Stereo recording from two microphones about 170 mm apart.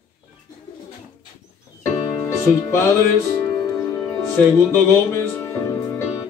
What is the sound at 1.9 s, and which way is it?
Music, 20° left (ahead or behind).